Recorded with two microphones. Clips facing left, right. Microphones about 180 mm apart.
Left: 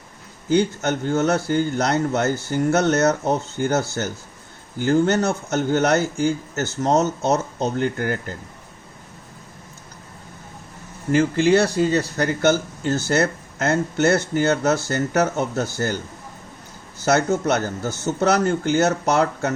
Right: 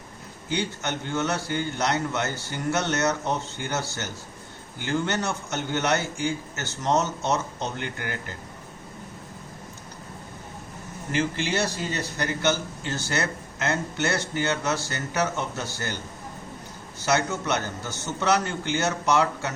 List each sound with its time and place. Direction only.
0.5 s speech: 45° left (ahead or behind)
11.1 s speech: 50° left (ahead or behind)
17.1 s speech: 45° left (ahead or behind)